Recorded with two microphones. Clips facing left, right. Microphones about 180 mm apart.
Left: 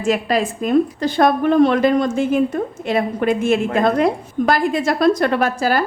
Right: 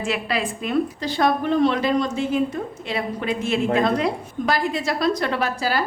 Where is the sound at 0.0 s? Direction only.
45° left (ahead or behind).